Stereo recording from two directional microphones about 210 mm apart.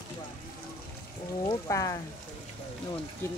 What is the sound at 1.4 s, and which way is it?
Speech, 15° left (ahead or behind).